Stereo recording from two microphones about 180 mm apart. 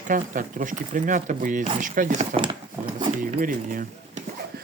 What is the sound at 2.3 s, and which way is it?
Speech, 25° right (ahead or behind).